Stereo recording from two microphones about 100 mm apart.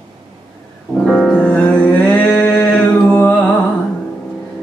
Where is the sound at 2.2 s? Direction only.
20° left (ahead or behind).